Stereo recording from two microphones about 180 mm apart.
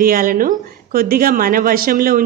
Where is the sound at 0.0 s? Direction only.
50° right (ahead or behind).